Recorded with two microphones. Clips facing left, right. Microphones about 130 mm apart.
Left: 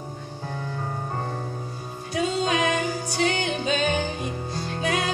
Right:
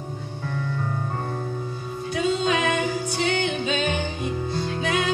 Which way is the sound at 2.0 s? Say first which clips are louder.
Right 2 dB; 40° left (ahead or behind).